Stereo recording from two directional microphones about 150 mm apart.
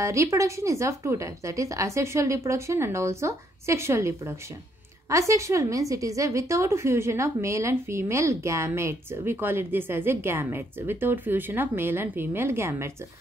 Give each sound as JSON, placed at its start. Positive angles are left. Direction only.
{"t": 0.0, "sound": "a woman's voice", "side_deg": -20}